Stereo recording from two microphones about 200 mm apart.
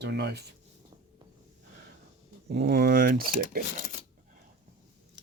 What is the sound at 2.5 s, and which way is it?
Speech, 55° right (ahead or behind).